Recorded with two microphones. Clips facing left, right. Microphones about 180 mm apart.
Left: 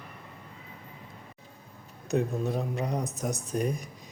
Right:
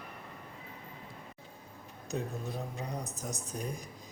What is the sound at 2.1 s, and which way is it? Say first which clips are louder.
Speech: left 9 dB; 75° left (ahead or behind).